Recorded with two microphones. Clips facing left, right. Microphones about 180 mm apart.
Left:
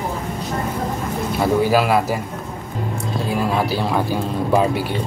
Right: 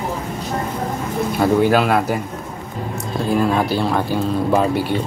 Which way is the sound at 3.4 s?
5° left (ahead or behind).